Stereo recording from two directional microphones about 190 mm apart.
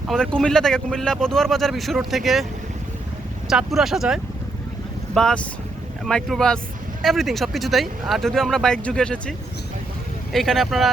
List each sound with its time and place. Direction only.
0.1 s speech: 5° left (ahead or behind)
3.5 s speech: centre (ahead or behind)
10.3 s speech: centre (ahead or behind)